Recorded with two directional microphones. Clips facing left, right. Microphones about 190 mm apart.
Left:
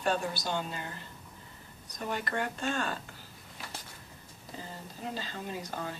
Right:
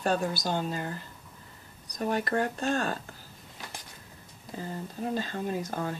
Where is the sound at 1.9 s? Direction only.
40° right (ahead or behind).